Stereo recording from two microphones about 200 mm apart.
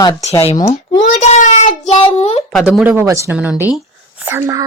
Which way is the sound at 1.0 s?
35° left (ahead or behind).